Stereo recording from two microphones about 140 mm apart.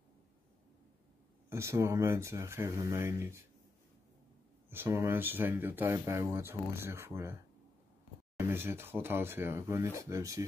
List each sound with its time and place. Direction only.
1.5 s speech: 20° right (ahead or behind)
4.6 s speech: 15° right (ahead or behind)
8.4 s speech: 15° right (ahead or behind)